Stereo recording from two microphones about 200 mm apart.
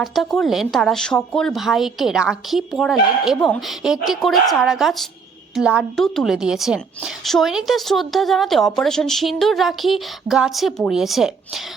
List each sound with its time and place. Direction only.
0.0 s a woman's voice: centre (ahead or behind)